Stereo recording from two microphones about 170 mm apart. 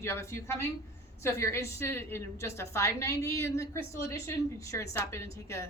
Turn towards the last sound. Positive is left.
turn(degrees=15)  # may be behind; listen again after turning